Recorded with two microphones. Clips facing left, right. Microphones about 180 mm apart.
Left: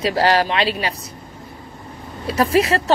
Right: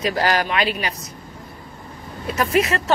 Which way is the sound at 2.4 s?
30° left (ahead or behind).